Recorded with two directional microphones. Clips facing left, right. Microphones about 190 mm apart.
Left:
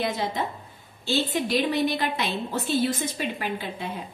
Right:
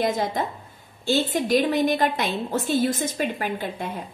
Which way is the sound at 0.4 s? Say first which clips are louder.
Right 2 dB; 50° right (ahead or behind).